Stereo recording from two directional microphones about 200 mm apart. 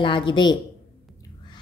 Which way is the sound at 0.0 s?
25° left (ahead or behind).